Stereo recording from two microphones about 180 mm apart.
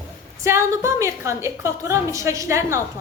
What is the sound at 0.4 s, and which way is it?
A woman's voice, 15° right (ahead or behind).